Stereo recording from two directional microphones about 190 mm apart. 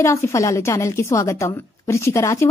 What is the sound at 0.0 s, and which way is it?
A woman's voice, 15° left (ahead or behind).